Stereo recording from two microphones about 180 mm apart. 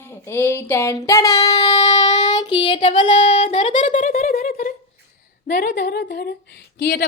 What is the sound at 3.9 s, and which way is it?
A woman's voice, 50° left (ahead or behind).